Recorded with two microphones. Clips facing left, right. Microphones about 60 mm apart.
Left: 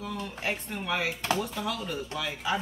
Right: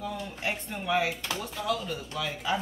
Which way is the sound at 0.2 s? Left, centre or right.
Centre.